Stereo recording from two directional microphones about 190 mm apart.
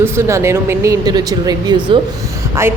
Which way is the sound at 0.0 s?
15° right (ahead or behind).